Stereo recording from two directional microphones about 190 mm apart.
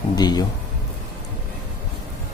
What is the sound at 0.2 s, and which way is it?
Speech, 20° left (ahead or behind).